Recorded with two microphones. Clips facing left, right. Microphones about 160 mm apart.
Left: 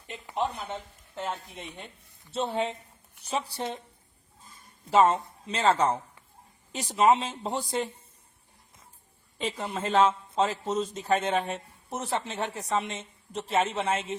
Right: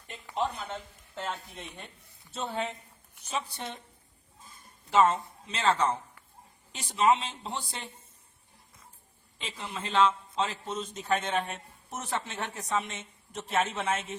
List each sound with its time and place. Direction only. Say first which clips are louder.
0.1 s speech: left 1 dB; 15° left (ahead or behind)
2.3 s speech: left 5 dB; 30° left (ahead or behind)
4.9 s speech: left 2 dB; 35° left (ahead or behind)
9.4 s a man's voice: left 7 dB; 45° left (ahead or behind)